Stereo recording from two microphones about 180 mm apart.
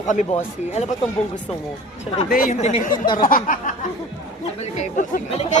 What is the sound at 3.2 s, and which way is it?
Speech, 50° left (ahead or behind).